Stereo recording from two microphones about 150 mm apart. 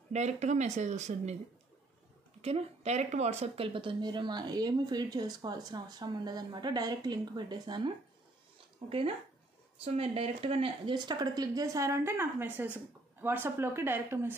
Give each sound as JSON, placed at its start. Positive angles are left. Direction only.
{"t": 0.1, "sound": "speech", "side_deg": -50}
{"t": 2.4, "sound": "speech", "side_deg": -45}